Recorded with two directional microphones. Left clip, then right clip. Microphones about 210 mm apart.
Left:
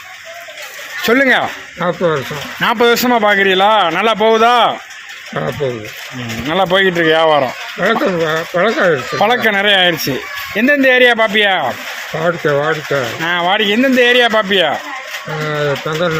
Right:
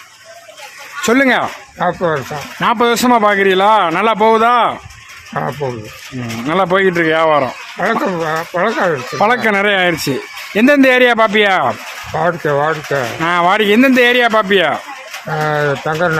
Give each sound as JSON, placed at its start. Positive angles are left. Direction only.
{"t": 1.0, "sound": "speech", "side_deg": -20}
{"t": 6.5, "sound": "speech", "side_deg": -20}
{"t": 12.2, "sound": "speech", "side_deg": -10}